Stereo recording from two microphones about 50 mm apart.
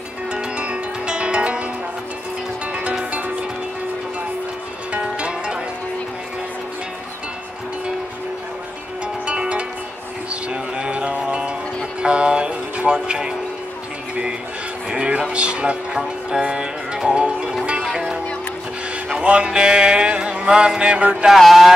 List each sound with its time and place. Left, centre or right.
0.3 s music: right
5.0 s music: right
9.0 s music: right
14.9 s music: centre
19.2 s music: right
21.3 s speech: centre